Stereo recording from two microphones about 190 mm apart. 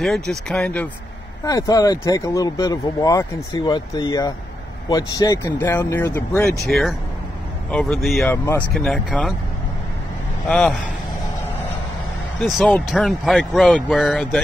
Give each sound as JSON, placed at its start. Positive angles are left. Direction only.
{"t": 0.0, "sound": "speech", "side_deg": 0}
{"t": 1.4, "sound": "speech", "side_deg": 15}
{"t": 6.7, "sound": "speech", "side_deg": 0}
{"t": 12.4, "sound": "speech", "side_deg": 0}